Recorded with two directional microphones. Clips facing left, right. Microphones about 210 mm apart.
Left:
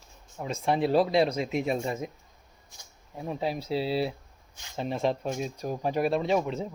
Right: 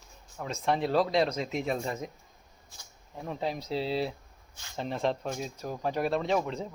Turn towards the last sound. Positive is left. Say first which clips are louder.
# left 3 dB
turn(degrees=10)  # may be behind; listen again after turning